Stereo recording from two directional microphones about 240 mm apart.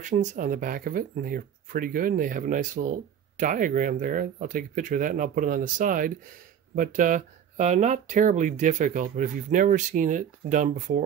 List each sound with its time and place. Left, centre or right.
0.0 s speech: right